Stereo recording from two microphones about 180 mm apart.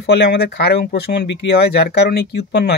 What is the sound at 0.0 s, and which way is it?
Speech, 70° left (ahead or behind).